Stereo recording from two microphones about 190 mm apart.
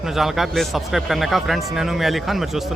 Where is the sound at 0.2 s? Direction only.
Centre (ahead or behind).